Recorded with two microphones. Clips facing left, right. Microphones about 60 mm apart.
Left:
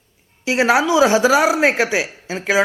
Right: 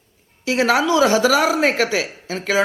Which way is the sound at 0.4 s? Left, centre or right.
Left.